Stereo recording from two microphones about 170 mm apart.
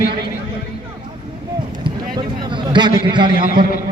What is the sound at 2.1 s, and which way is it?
A man's voice, 25° right (ahead or behind).